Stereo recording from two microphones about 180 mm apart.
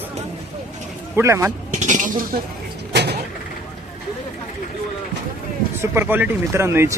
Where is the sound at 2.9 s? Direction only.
65° right (ahead or behind).